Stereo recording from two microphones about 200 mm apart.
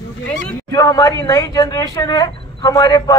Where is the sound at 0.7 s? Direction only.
20° left (ahead or behind).